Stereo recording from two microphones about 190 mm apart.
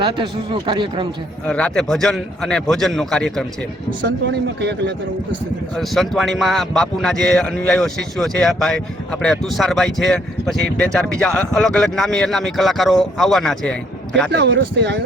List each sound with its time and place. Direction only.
0.0 s speech: 30° right (ahead or behind)
1.5 s speech: 5° left (ahead or behind)
5.7 s speech: centre (ahead or behind)
14.3 s speech: 65° right (ahead or behind)